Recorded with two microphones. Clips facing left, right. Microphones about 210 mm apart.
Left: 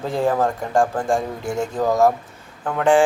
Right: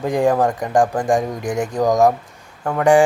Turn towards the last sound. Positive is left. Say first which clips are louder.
# right 3 dB
turn(degrees=-15)  # may be behind; listen again after turning